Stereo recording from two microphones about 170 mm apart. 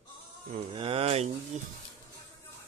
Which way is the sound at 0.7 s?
35° right (ahead or behind).